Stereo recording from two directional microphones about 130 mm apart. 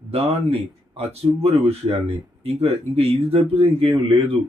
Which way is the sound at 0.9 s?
50° right (ahead or behind).